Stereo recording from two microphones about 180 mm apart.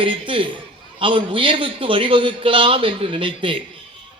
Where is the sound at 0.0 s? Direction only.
30° right (ahead or behind).